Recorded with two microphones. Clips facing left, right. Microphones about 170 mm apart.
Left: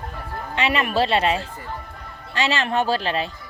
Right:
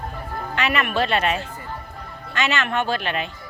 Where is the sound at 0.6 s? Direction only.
30° left (ahead or behind).